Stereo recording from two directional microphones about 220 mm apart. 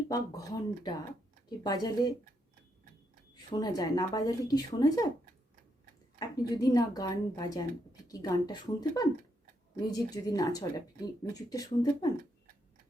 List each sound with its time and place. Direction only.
0.1 s speech: 15° left (ahead or behind)
3.5 s speech: 15° left (ahead or behind)
6.1 s speech: 15° left (ahead or behind)